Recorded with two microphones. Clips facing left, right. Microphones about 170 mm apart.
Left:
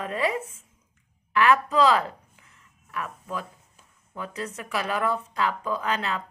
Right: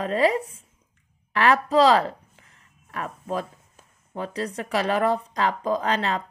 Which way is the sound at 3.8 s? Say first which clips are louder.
Right 5 dB; 35° right (ahead or behind).